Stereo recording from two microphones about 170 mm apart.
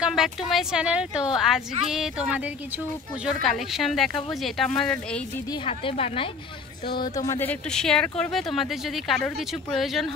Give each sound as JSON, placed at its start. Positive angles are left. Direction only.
{"t": 0.0, "sound": "speech", "side_deg": 0}
{"t": 5.7, "sound": "a woman's voice", "side_deg": 35}
{"t": 7.0, "sound": "speech", "side_deg": 20}